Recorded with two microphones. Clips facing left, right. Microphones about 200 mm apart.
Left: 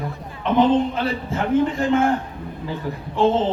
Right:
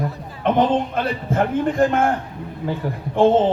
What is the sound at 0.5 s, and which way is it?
A man's voice, 55° right (ahead or behind).